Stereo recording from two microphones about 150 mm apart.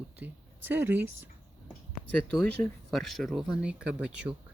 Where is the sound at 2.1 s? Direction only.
5° left (ahead or behind).